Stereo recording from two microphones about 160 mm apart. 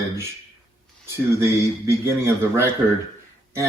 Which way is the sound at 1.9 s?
15° right (ahead or behind).